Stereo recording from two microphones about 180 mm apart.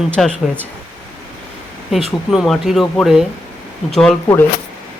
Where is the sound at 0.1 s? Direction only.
5° left (ahead or behind).